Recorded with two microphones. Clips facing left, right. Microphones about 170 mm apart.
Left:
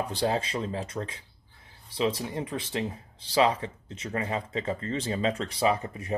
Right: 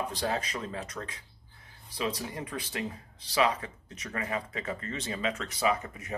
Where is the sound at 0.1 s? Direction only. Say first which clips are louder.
Left 4 dB; 30° left (ahead or behind).